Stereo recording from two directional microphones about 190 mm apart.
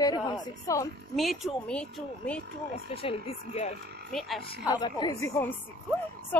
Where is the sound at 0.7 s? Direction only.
15° left (ahead or behind).